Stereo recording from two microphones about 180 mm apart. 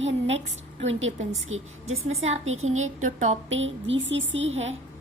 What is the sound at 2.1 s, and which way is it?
A woman's voice, 35° right (ahead or behind).